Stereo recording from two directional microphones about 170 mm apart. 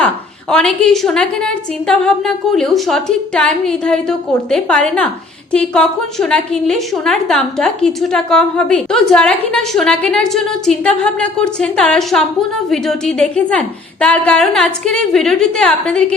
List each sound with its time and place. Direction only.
0.5 s a woman's voice: 5° left (ahead or behind)